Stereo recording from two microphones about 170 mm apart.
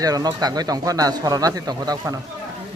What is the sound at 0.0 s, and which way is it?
Speech, 20° right (ahead or behind).